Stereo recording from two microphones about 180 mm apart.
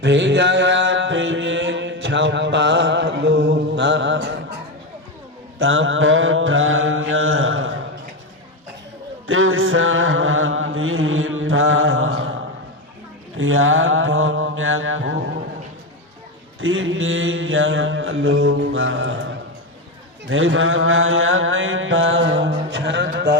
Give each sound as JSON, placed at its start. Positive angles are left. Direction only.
{"t": 0.0, "sound": "mantra", "side_deg": -85}
{"t": 5.5, "sound": "mantra", "side_deg": -90}
{"t": 9.2, "sound": "mantra", "side_deg": -90}
{"t": 13.3, "sound": "mantra", "side_deg": -90}
{"t": 16.6, "sound": "mantra", "side_deg": -90}
{"t": 20.3, "sound": "mantra", "side_deg": -90}